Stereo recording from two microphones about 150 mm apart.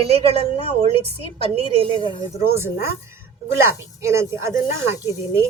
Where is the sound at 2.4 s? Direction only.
15° right (ahead or behind).